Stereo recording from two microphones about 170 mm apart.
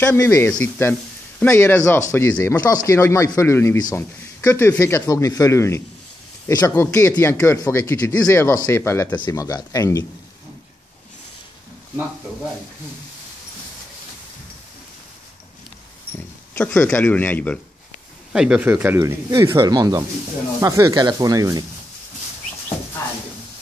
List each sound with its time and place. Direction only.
0.0 s speech: 15° left (ahead or behind)
16.5 s speech: 15° left (ahead or behind)
18.3 s speech: 5° right (ahead or behind); by 21.6 s 20° right (ahead or behind)